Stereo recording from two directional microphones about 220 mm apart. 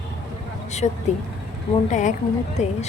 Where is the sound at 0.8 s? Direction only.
30° left (ahead or behind).